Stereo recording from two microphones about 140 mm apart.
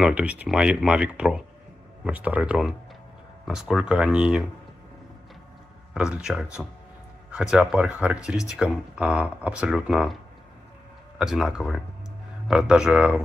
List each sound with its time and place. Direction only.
0.0 s speech: 10° right (ahead or behind)
5.9 s speech: 5° right (ahead or behind)
11.1 s speech: 5° right (ahead or behind)